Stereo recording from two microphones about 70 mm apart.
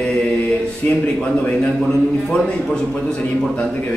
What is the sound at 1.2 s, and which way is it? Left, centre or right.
A man's voice, centre.